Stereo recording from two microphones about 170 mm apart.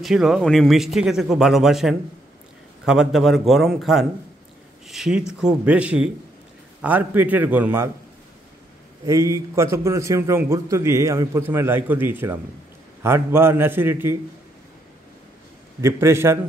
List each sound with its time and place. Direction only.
0.0 s a man's voice: centre (ahead or behind)
9.0 s a man's voice: 15° right (ahead or behind)
15.8 s a man's voice: 15° right (ahead or behind)